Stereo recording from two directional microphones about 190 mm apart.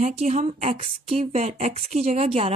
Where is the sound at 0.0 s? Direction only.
35° right (ahead or behind).